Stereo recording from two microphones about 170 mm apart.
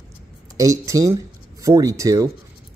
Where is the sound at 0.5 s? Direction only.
20° right (ahead or behind).